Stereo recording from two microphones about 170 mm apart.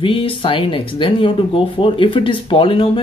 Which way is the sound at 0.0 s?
30° left (ahead or behind).